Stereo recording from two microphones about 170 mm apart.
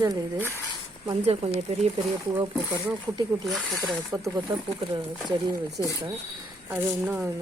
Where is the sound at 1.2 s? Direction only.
35° right (ahead or behind).